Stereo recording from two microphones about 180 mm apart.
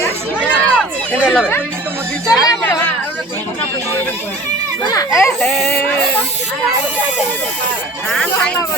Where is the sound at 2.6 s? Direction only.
10° left (ahead or behind).